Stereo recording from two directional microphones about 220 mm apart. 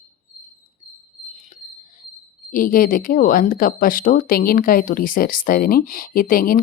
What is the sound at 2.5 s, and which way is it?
Speech, 40° left (ahead or behind).